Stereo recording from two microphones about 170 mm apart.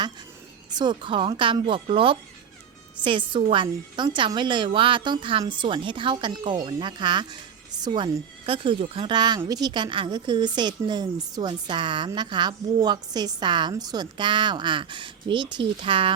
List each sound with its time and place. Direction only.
0.7 s a woman's voice: 25° right (ahead or behind)